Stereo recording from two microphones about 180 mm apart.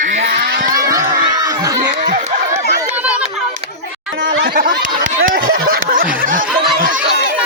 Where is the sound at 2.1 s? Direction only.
35° right (ahead or behind).